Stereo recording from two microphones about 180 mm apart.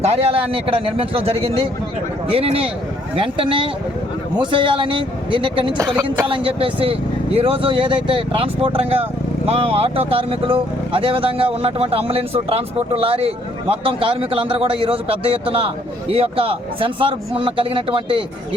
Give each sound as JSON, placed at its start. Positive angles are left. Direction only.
{"t": 0.0, "sound": "speech", "side_deg": -35}